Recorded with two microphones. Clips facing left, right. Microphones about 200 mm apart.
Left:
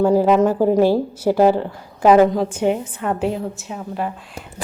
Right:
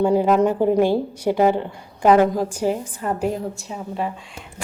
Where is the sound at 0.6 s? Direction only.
40° left (ahead or behind).